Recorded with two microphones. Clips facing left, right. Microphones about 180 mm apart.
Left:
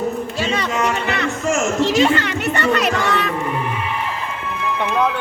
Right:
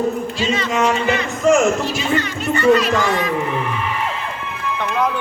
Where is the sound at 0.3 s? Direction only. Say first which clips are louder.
Right 2 dB; 60° left (ahead or behind).